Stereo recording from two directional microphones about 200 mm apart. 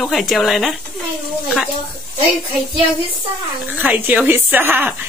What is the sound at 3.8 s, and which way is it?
A woman's voice, 10° right (ahead or behind).